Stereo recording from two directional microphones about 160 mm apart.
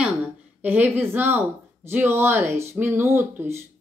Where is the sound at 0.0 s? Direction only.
10° right (ahead or behind).